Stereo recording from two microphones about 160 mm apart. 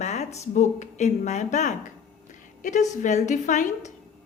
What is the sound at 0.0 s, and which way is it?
A woman's voice, 45° left (ahead or behind).